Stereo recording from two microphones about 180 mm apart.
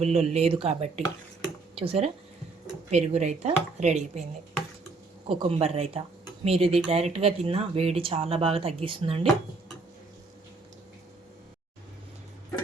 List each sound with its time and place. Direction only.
0.0 s speech: 35° right (ahead or behind)
5.2 s speech: 30° right (ahead or behind)